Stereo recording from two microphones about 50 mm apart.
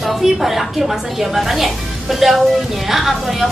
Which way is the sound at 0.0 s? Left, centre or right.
Centre.